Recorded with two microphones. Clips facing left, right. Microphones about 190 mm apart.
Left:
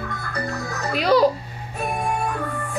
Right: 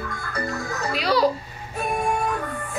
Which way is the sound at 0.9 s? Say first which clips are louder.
Left 4 dB; 50° left (ahead or behind).